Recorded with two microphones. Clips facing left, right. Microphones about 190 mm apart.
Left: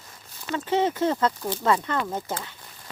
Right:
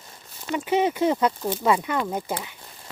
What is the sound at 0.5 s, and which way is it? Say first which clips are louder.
Speech: right 1 dB; 15° right (ahead or behind).